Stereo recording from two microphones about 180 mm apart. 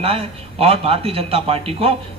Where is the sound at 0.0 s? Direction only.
35° right (ahead or behind).